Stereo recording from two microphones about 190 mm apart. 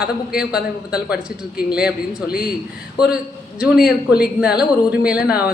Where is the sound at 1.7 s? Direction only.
5° right (ahead or behind).